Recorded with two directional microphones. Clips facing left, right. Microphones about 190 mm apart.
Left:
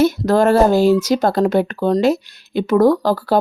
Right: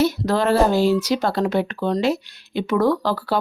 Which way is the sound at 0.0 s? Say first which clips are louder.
Left 5 dB; 45° left (ahead or behind).